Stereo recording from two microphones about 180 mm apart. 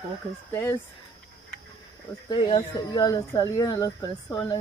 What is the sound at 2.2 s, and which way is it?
Speech, 25° left (ahead or behind).